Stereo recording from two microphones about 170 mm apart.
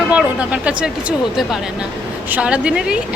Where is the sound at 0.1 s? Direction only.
5° right (ahead or behind).